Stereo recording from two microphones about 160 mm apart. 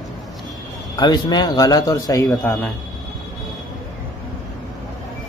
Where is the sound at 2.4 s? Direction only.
10° left (ahead or behind).